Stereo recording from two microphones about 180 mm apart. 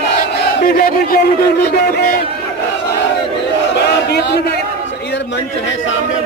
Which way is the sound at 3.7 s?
70° left (ahead or behind).